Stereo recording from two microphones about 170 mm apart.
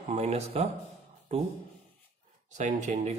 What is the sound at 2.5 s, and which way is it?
Speech, 45° right (ahead or behind).